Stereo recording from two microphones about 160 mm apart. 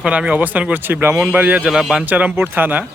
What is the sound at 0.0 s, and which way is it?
Speech, 5° right (ahead or behind).